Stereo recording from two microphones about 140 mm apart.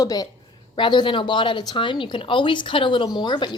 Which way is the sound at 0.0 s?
25° left (ahead or behind).